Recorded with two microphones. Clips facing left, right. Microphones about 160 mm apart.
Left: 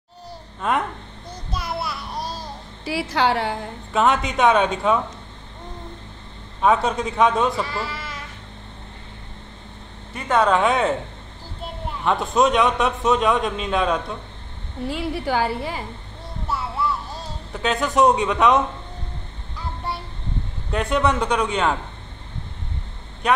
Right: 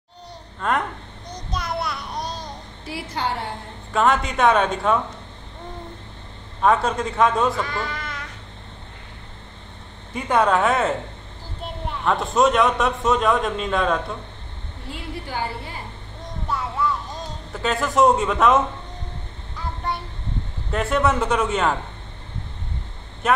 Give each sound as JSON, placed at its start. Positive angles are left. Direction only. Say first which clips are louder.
{"t": 0.6, "sound": "speech", "louder": "left 1 dB", "side_deg": 5}
{"t": 1.3, "sound": "child singing", "louder": "right 1 dB", "side_deg": 5}
{"t": 2.8, "sound": "a woman's voice", "louder": "left 6 dB", "side_deg": 90}
{"t": 3.9, "sound": "a man's voice", "louder": "even", "side_deg": 0}
{"t": 6.6, "sound": "a man's voice", "louder": "even", "side_deg": 0}
{"t": 10.2, "sound": "a man's voice", "louder": "left 1 dB", "side_deg": -10}
{"t": 12.0, "sound": "a man's voice", "louder": "even", "side_deg": 0}
{"t": 14.9, "sound": "a woman's voice", "louder": "left 8 dB", "side_deg": 90}
{"t": 16.4, "sound": "vehicle", "louder": "even", "side_deg": 5}
{"t": 17.5, "sound": "a man's voice", "louder": "left 1 dB", "side_deg": 0}
{"t": 20.7, "sound": "a man's voice", "louder": "even", "side_deg": 0}
{"t": 23.2, "sound": "a man's voice", "louder": "even", "side_deg": -5}